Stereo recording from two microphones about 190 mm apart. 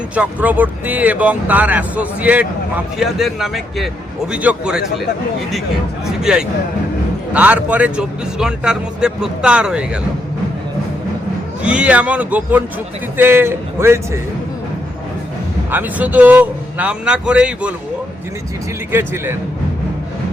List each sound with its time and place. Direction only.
0.1 s speech: 10° right (ahead or behind)
6.3 s speech: 5° right (ahead or behind)
11.6 s speech: 5° right (ahead or behind)
15.7 s speech: 10° right (ahead or behind)
18.9 s speech: 10° right (ahead or behind)